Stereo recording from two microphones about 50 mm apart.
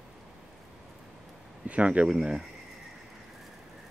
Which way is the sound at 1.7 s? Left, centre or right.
Right.